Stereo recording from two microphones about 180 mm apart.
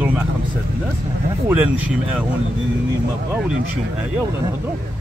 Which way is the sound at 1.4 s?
10° right (ahead or behind).